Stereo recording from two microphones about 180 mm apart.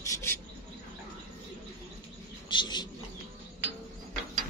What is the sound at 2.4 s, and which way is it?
Bird, 25° left (ahead or behind).